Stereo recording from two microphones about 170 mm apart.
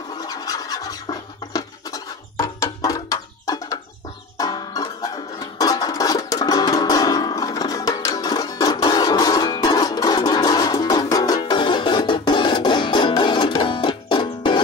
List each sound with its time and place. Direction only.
0.1 s scratch: 25° left (ahead or behind)
4.4 s music: 20° left (ahead or behind)